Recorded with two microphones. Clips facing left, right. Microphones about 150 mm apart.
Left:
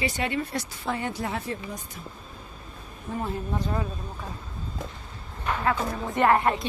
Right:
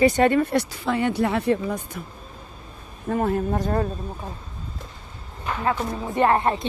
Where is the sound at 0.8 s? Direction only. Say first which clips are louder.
Right 5 dB; 85° right; by 2.0 s 60° right (ahead or behind).